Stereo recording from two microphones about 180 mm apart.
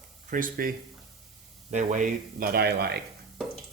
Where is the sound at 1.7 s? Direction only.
45° right (ahead or behind); by 3.0 s 60° right (ahead or behind).